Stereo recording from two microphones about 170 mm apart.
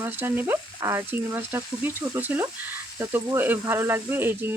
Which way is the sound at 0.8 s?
20° right (ahead or behind).